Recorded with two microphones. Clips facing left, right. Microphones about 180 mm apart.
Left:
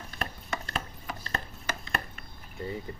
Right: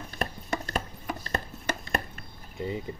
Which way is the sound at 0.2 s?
40° right (ahead or behind).